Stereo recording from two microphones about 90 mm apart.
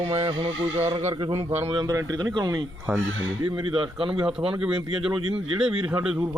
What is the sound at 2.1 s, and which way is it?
Speech, 45° right (ahead or behind).